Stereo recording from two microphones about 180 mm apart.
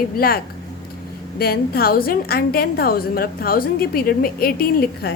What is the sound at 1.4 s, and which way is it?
A woman's voice, 55° left (ahead or behind).